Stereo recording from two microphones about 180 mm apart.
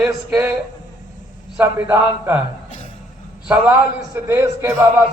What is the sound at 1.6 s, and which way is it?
Speech, 10° right (ahead or behind).